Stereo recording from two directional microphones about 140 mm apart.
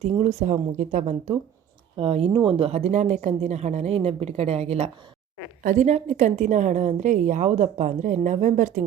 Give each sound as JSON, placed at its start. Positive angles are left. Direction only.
{"t": 0.0, "sound": "a woman's voice", "side_deg": -50}
{"t": 2.0, "sound": "a woman's voice", "side_deg": -45}